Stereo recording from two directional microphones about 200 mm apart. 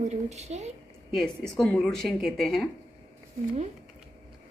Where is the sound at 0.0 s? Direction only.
35° right (ahead or behind).